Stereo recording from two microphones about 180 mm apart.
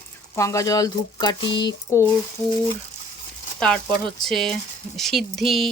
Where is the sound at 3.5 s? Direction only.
5° left (ahead or behind).